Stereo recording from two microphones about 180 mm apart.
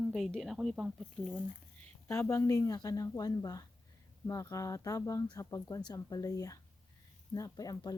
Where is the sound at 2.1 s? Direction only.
15° left (ahead or behind).